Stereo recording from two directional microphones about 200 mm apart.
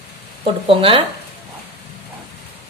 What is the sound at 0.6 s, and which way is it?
Speech, 25° right (ahead or behind).